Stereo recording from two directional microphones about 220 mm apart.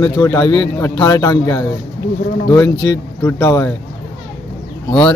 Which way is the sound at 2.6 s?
55° left (ahead or behind).